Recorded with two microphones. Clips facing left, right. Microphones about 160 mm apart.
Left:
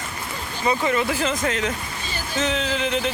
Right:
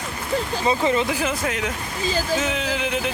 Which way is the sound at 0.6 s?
25° right (ahead or behind).